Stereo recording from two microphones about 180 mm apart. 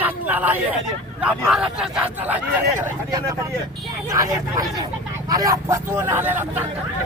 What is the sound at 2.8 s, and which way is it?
Speech, 20° right (ahead or behind).